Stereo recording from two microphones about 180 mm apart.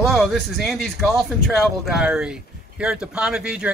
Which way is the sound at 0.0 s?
Centre (ahead or behind).